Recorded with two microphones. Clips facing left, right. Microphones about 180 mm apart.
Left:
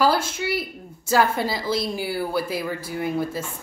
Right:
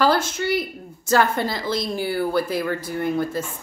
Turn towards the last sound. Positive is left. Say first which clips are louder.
# right 2 dB
turn(degrees=5)  # may be behind; listen again after turning